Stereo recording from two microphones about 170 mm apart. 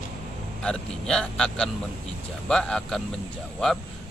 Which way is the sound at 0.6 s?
5° left (ahead or behind).